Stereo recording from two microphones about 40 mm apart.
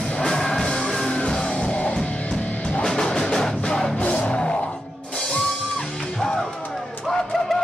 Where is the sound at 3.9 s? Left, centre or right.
Left.